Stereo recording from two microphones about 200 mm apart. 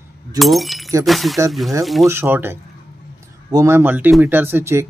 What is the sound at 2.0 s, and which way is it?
Speech, 15° right (ahead or behind).